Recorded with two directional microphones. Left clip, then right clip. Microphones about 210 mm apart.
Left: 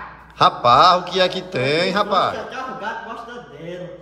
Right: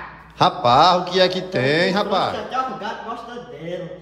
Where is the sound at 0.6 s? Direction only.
15° right (ahead or behind).